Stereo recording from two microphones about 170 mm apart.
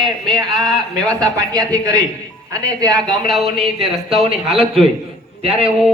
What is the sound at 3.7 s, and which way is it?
Speech, 35° right (ahead or behind).